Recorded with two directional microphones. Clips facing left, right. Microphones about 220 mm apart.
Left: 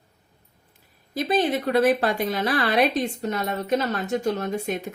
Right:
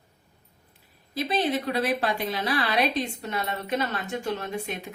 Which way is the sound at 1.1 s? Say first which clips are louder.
Left 3 dB; 50° left (ahead or behind).